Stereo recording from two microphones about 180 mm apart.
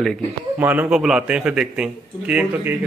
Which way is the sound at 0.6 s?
10° right (ahead or behind).